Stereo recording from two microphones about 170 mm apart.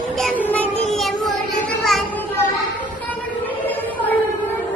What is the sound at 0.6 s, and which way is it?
Child singing, 35° right (ahead or behind).